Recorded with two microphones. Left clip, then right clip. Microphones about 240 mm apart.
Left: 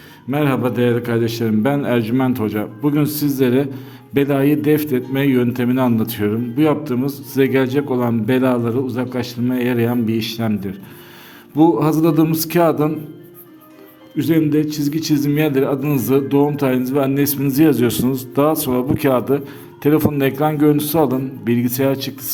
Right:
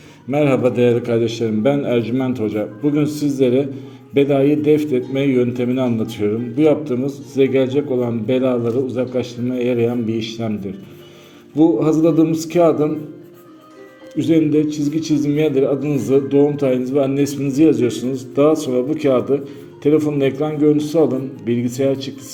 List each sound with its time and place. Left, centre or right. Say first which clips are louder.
0.3 s a man's voice: right 3 dB; centre
14.2 s a man's voice: right 1 dB; left